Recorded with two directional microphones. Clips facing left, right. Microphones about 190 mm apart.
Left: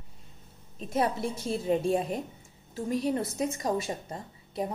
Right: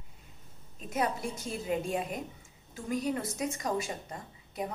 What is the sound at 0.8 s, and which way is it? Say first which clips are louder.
A woman's voice: left 4 dB; 30° left (ahead or behind).